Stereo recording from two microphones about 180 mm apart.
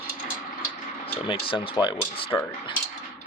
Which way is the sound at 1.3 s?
30° left (ahead or behind).